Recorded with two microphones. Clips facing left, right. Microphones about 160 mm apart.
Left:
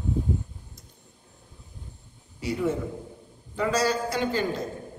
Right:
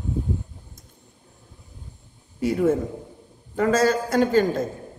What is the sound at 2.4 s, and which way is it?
Speech, 50° right (ahead or behind).